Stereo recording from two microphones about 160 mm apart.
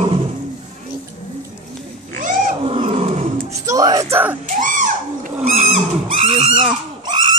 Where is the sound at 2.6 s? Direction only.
40° right (ahead or behind).